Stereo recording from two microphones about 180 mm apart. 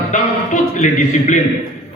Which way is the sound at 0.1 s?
45° left (ahead or behind).